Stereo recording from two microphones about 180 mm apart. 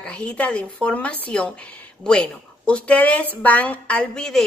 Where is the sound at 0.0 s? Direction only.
5° left (ahead or behind).